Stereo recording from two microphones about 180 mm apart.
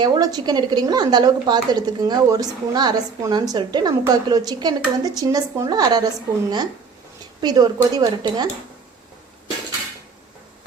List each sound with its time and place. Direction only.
0.0 s a woman's voice: 20° right (ahead or behind)
7.4 s a woman's voice: 20° right (ahead or behind)